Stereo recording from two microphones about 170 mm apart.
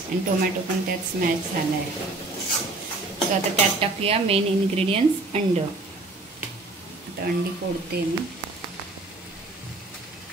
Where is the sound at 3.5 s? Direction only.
35° right (ahead or behind).